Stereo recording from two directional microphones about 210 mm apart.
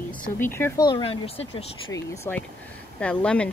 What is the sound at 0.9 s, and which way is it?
Speech, 25° left (ahead or behind).